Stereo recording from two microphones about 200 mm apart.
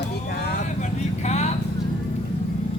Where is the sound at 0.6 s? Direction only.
35° left (ahead or behind).